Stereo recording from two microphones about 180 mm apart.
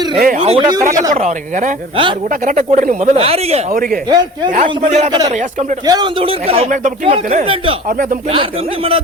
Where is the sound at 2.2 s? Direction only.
45° right (ahead or behind).